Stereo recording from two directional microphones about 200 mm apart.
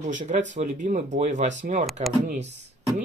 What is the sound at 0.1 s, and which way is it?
Speech, 40° right (ahead or behind).